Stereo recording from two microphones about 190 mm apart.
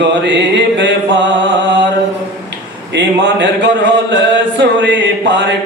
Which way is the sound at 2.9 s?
65° right (ahead or behind).